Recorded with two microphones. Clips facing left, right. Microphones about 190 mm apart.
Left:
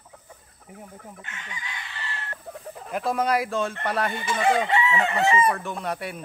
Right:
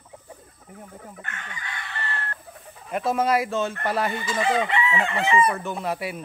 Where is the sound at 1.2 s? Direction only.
60° right (ahead or behind).